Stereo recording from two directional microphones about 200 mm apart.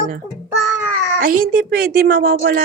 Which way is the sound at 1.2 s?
45° right (ahead or behind).